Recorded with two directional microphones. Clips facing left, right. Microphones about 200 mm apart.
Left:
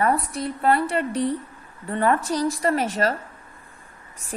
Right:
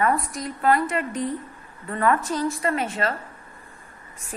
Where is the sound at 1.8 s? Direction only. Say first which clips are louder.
Left 1 dB; 30° left (ahead or behind).